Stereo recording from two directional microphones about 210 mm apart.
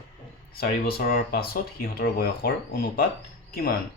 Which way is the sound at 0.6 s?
45° left (ahead or behind).